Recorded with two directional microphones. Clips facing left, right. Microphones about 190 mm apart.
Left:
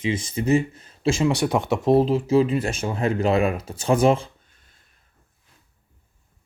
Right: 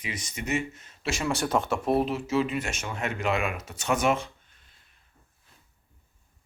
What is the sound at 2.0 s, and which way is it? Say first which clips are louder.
Speech: left 7 dB; 30° left (ahead or behind).